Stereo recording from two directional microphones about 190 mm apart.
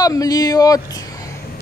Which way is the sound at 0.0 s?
20° left (ahead or behind).